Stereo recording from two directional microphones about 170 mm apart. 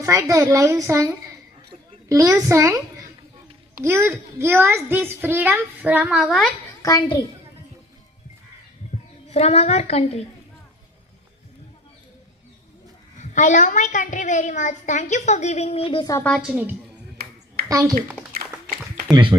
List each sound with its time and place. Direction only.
0.0 s a child's voice: 15° right (ahead or behind)
3.8 s a child's voice: 15° right (ahead or behind); by 6.5 s centre (ahead or behind)
6.8 s a child's voice: 20° left (ahead or behind)
8.9 s a sound: 35° left (ahead or behind)
9.3 s a woman's voice: 40° left (ahead or behind)
13.1 s a woman's voice: 45° left (ahead or behind); by 16.2 s 25° left (ahead or behind)
16.5 s a child's voice: 10° right (ahead or behind)
17.2 s a sound: 65° right (ahead or behind)
17.7 s speech: 20° right (ahead or behind)
18.3 s a sound: 60° right (ahead or behind)
19.1 s a woman's voice: 25° right (ahead or behind)